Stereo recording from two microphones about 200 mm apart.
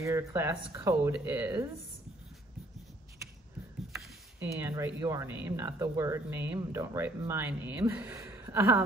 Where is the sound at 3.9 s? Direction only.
10° right (ahead or behind).